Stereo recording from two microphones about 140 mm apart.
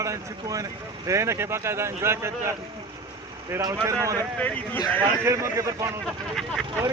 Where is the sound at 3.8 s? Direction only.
20° right (ahead or behind).